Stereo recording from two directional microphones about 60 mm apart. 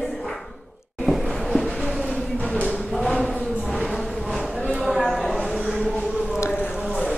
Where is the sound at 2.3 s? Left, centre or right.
Left.